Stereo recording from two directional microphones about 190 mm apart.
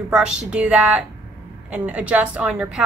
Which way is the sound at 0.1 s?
5° right (ahead or behind).